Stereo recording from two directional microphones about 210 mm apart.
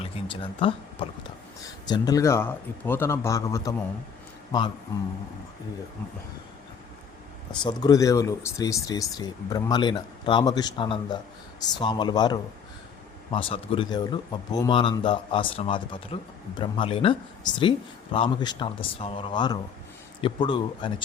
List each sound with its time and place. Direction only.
0.0 s speech: 25° left (ahead or behind)
7.6 s speech: 20° left (ahead or behind)